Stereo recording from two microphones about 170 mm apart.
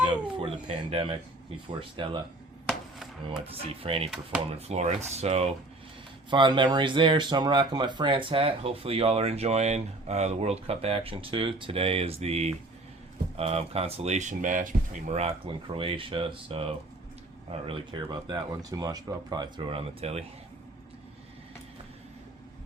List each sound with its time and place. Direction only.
0.3 s speech: 35° right (ahead or behind)
2.6 s chop: centre (ahead or behind)
3.5 s speech: 35° right (ahead or behind)
6.3 s speech: 30° right (ahead or behind)